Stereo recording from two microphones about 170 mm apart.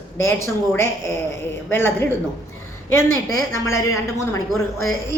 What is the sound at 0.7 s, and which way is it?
A woman's voice, 15° left (ahead or behind).